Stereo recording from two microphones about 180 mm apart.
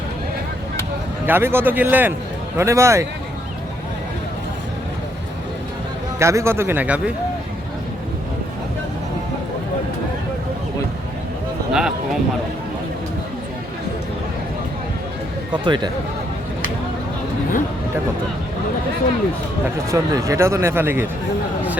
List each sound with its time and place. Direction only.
1.3 s speech: 10° right (ahead or behind)
6.1 s speech: 15° right (ahead or behind)
11.7 s speech: 5° right (ahead or behind)
15.6 s speech: 25° right (ahead or behind)
19.9 s speech: 15° right (ahead or behind)